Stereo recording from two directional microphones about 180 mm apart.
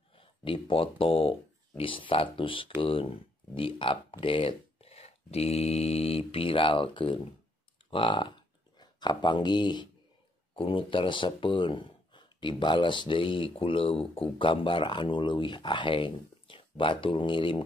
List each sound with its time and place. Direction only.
0.5 s speech: 30° left (ahead or behind)